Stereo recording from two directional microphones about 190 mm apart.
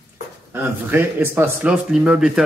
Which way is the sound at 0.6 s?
10° right (ahead or behind).